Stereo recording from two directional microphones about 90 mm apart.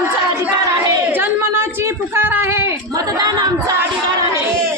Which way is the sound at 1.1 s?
25° right (ahead or behind).